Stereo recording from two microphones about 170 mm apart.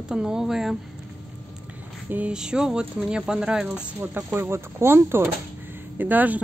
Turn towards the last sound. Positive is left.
turn(degrees=-10)  # may be behind; listen again after turning